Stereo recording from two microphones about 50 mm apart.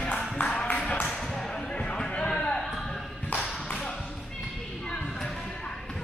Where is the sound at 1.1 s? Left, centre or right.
Centre.